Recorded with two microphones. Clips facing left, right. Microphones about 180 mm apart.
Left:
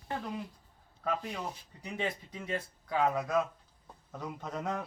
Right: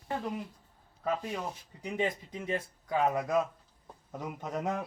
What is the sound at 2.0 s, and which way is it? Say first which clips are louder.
A man's voice: right 4 dB; 15° right (ahead or behind).